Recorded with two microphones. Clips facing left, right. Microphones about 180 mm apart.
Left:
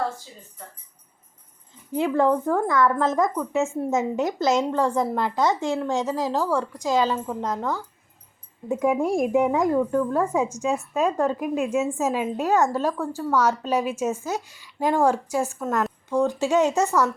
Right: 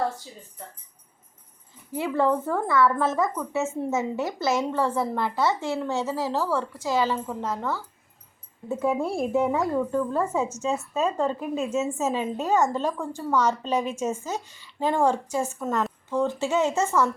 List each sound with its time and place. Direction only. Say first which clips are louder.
1.9 s a woman's voice: left 3 dB; 15° left (ahead or behind)
16.0 s a woman's voice: left 4 dB; 10° left (ahead or behind)